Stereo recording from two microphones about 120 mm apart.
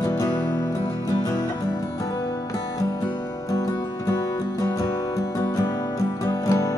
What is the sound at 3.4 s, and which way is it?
Music, 30° left (ahead or behind).